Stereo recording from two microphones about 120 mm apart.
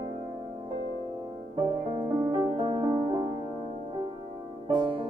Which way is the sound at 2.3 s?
45° right (ahead or behind).